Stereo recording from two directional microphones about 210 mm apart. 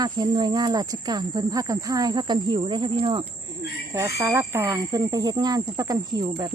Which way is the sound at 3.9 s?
15° right (ahead or behind).